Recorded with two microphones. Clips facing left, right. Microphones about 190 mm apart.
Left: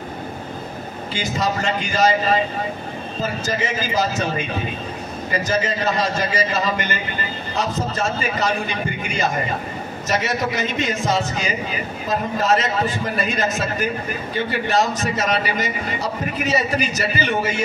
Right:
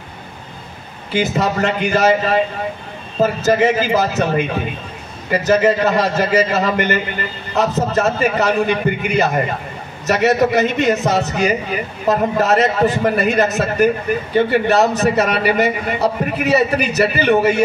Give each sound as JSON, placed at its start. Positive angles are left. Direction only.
{"t": 1.1, "sound": "a man's voice", "side_deg": -60}